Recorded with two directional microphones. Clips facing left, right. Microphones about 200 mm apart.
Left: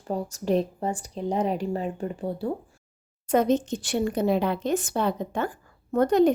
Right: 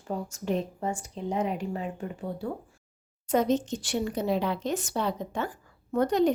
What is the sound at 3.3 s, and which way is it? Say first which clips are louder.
A woman's voice: left 3 dB; 55° left (ahead or behind).